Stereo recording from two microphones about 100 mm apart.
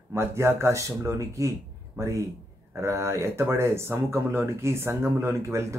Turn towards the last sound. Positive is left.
turn(degrees=-30)  # may be behind; listen again after turning